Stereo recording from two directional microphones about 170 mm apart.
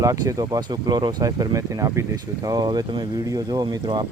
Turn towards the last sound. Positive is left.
turn(degrees=-25)  # may be behind; listen again after turning